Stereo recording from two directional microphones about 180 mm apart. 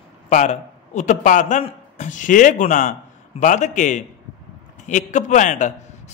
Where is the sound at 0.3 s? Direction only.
40° left (ahead or behind).